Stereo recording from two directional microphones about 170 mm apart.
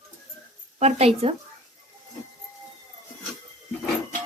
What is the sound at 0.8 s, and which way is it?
Speech, 40° right (ahead or behind).